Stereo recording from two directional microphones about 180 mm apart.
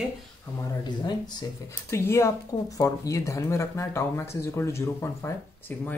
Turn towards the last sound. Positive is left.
turn(degrees=10)  # may be behind; listen again after turning